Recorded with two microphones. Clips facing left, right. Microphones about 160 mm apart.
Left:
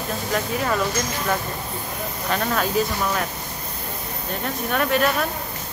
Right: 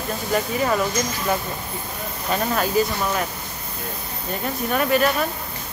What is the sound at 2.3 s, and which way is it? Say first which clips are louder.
Speech: right 1 dB; 5° right (ahead or behind).